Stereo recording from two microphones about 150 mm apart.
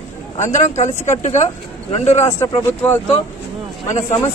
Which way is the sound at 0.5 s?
55° left (ahead or behind).